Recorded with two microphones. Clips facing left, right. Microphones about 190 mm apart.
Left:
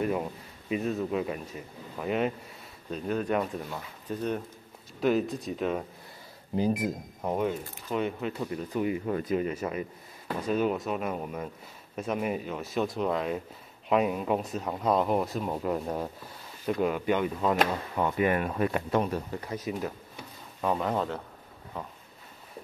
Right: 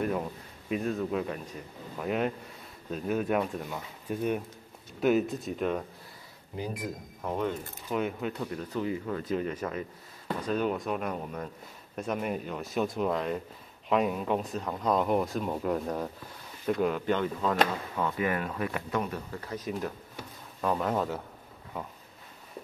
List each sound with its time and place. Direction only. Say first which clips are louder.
0.0 s speech: left 1 dB; 5° left (ahead or behind)
7.9 s speech: left 1 dB; centre (ahead or behind); by 19.4 s 30° left (ahead or behind)
19.4 s speech: left 1 dB; 10° left (ahead or behind)